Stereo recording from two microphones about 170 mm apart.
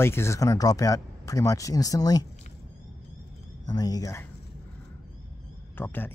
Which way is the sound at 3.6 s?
20° left (ahead or behind).